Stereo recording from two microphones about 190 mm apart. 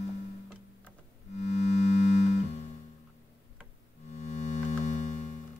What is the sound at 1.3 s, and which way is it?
Music, 35° left (ahead or behind).